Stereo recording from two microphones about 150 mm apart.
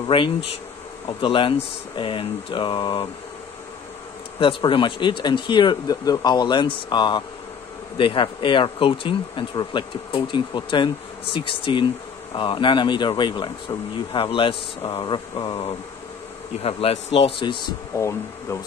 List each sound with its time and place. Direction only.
1.2 s speech: 35° left (ahead or behind)
4.4 s speech: 35° left (ahead or behind)
17.9 s speech: 20° left (ahead or behind)